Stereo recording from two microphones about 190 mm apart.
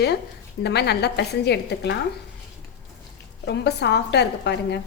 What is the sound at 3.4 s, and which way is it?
A woman's voice, 60° left (ahead or behind).